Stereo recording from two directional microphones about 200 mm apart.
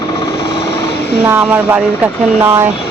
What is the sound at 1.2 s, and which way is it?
Speech, 10° right (ahead or behind).